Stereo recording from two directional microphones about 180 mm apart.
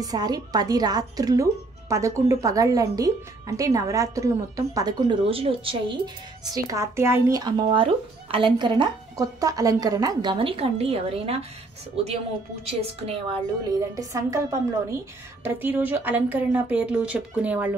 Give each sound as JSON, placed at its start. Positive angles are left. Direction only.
{"t": 0.0, "sound": "a woman's voice", "side_deg": -20}
{"t": 6.4, "sound": "a woman's voice", "side_deg": -20}
{"t": 12.6, "sound": "a woman's voice", "side_deg": -35}
{"t": 13.7, "sound": "speech", "side_deg": -20}